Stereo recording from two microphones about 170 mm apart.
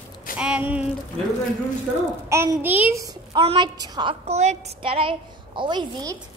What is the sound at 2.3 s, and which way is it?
Child singing, 15° right (ahead or behind).